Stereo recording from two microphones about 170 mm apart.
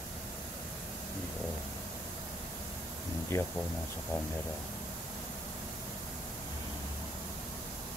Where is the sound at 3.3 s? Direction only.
15° left (ahead or behind).